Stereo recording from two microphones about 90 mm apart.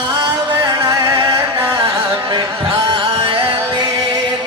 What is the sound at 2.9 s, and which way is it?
Music, 70° right (ahead or behind).